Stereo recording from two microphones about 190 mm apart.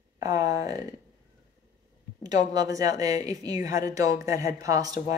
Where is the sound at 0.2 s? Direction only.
20° right (ahead or behind).